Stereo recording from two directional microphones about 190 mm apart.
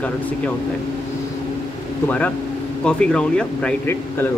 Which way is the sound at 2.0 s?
5° left (ahead or behind).